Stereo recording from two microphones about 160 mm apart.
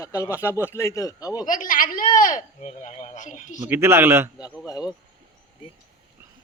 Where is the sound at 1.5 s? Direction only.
60° left (ahead or behind).